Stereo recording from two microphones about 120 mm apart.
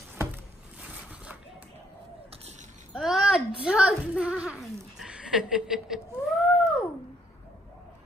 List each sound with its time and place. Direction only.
0.8 s zipper: 15° right (ahead or behind)
2.9 s babbling: 5° right (ahead or behind)
3.6 s a sound: 5° right (ahead or behind)